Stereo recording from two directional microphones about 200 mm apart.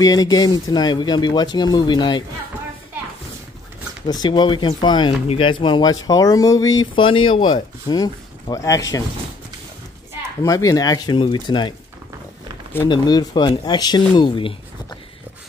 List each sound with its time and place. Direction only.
0.0 s speech: 20° left (ahead or behind)
4.1 s speech: 20° left (ahead or behind)
10.4 s speech: 15° left (ahead or behind)
12.8 s speech: 20° left (ahead or behind)